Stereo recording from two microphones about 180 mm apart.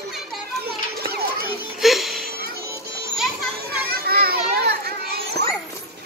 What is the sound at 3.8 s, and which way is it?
Children playing, 60° right (ahead or behind).